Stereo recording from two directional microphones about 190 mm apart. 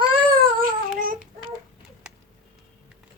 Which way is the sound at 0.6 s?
50° right (ahead or behind).